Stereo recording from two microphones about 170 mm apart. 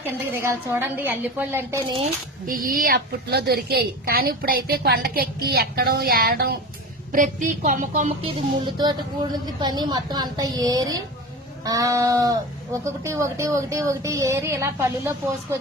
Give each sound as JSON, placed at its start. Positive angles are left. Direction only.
{"t": 0.0, "sound": "speech", "side_deg": -15}
{"t": 2.5, "sound": "a woman's voice", "side_deg": -55}
{"t": 7.1, "sound": "speech", "side_deg": -50}